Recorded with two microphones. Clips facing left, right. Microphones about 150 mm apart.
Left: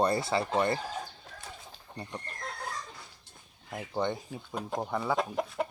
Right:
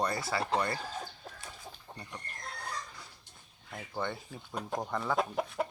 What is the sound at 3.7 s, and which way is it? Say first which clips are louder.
Speech: left 5 dB; 20° left (ahead or behind).